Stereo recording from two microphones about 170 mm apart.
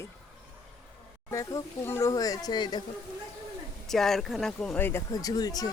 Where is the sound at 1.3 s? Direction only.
20° left (ahead or behind).